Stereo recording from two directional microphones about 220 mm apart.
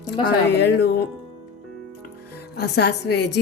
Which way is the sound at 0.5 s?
50° left (ahead or behind).